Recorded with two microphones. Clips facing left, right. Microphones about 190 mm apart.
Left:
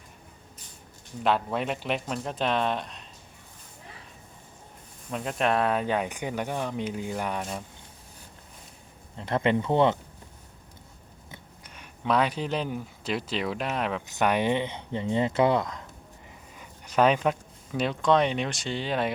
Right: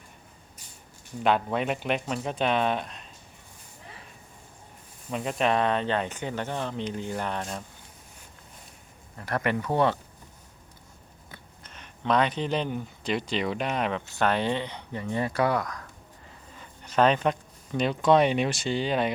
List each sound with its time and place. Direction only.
1.2 s speech: centre (ahead or behind)
5.1 s speech: centre (ahead or behind)
9.1 s speech: 20° left (ahead or behind)
11.3 s speech: 10° left (ahead or behind)
14.2 s speech: 15° left (ahead or behind)
16.9 s speech: 5° left (ahead or behind)
18.0 s speech: 10° right (ahead or behind)